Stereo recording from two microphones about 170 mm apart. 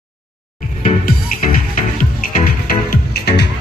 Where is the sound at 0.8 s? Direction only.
50° left (ahead or behind).